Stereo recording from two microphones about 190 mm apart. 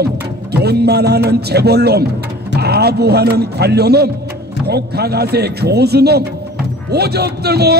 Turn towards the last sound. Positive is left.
turn(degrees=-55)  # may be behind; listen again after turning